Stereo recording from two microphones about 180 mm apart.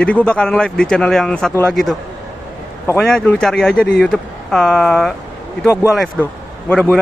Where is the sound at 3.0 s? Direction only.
5° left (ahead or behind).